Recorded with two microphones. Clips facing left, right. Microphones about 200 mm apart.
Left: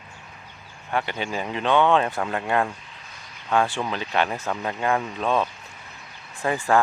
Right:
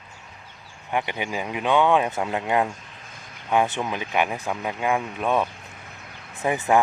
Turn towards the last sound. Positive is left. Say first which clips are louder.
# right 1 dB
turn(degrees=-20)  # may be behind; listen again after turning